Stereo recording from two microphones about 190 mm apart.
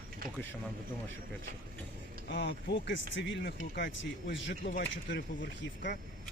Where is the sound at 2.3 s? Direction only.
70° left (ahead or behind).